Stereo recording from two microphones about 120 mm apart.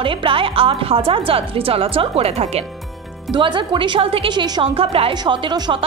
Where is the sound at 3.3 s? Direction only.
45° right (ahead or behind).